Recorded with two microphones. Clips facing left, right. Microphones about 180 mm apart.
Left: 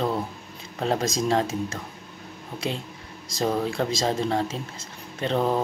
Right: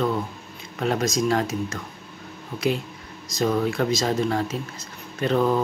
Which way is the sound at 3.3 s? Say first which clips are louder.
Right 2 dB; 30° left (ahead or behind).